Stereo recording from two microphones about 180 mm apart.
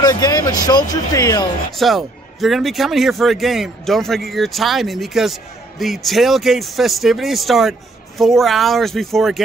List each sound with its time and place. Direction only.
0.0 s speech: 20° left (ahead or behind)
1.8 s a man's voice: centre (ahead or behind)